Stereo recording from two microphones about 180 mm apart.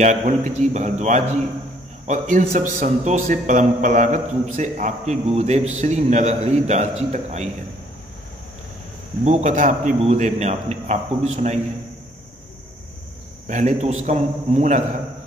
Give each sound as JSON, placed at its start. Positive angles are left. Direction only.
{"t": 0.0, "sound": "a man's voice", "side_deg": -40}
{"t": 9.2, "sound": "a man's voice", "side_deg": -40}
{"t": 13.5, "sound": "a man's voice", "side_deg": -40}